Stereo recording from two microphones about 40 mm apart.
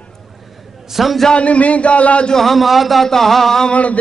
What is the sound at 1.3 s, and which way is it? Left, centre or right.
Speech, left.